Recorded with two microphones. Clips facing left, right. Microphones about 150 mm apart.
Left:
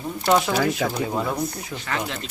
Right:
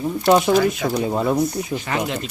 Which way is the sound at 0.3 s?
20° right (ahead or behind).